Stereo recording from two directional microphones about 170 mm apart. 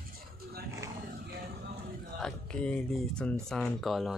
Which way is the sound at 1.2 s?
70° right (ahead or behind).